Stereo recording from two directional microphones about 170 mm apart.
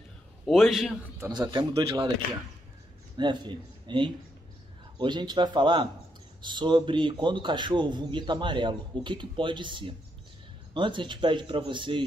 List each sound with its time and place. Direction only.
0.5 s a man's voice: centre (ahead or behind)
1.2 s a man's voice: 20° right (ahead or behind)
3.2 s a man's voice: 25° right (ahead or behind)